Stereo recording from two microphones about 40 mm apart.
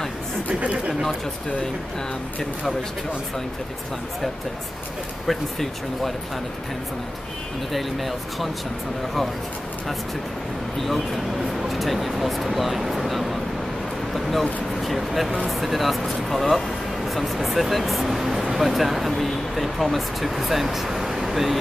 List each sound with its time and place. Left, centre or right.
0.5 s a sound: right
5.2 s speech: centre
7.7 s speech: centre
11.7 s speech: centre